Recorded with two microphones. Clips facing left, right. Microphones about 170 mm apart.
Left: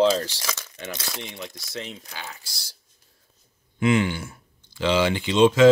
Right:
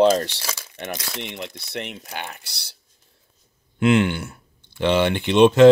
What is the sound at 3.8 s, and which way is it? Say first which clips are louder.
Speech: right 3 dB; 70° right (ahead or behind).